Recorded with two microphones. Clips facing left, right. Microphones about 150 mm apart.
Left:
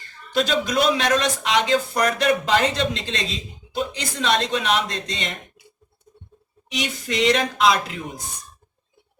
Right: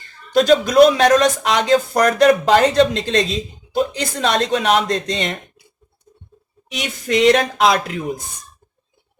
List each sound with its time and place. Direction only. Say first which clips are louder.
0.3 s speech: right 10 dB; 45° right (ahead or behind)
7.1 s speech: right 7 dB; 50° right (ahead or behind)